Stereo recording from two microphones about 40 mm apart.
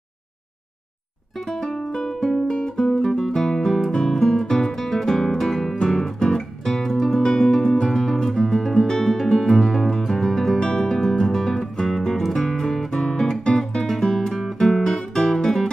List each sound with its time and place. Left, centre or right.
1.5 s music: centre
2.4 s guitar: centre
3.1 s music: centre
6.1 s guitar: centre
7.2 s music: centre
7.9 s guitar: centre
9.0 s music: centre
10.6 s music: left